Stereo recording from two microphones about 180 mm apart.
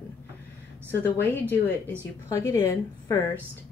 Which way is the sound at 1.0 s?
10° left (ahead or behind).